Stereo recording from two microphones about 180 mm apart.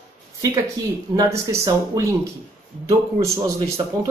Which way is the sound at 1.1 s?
15° right (ahead or behind).